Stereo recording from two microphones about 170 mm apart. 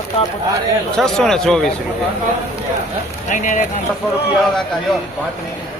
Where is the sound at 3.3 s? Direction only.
45° left (ahead or behind).